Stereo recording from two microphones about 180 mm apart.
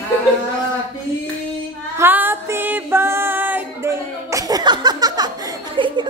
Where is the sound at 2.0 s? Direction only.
10° right (ahead or behind).